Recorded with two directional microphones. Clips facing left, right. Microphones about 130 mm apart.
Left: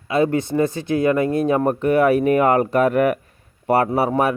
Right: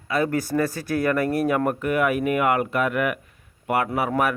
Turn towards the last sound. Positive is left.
turn(degrees=25)  # may be behind; listen again after turning